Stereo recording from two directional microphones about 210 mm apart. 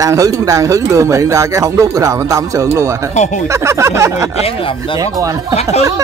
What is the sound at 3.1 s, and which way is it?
Speech, 35° left (ahead or behind).